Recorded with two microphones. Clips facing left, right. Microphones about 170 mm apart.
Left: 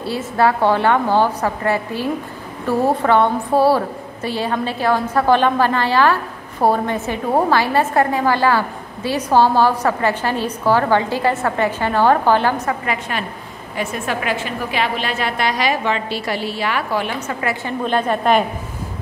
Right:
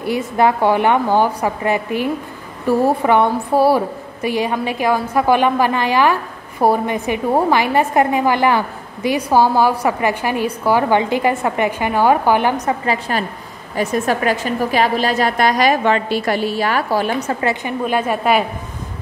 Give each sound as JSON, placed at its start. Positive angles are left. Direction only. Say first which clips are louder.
{"t": 0.0, "sound": "a woman's voice", "louder": "right 2 dB", "side_deg": -15}
{"t": 12.8, "sound": "a woman's voice", "louder": "right 4 dB", "side_deg": -30}
{"t": 17.6, "sound": "a woman's voice", "louder": "left 3 dB", "side_deg": -10}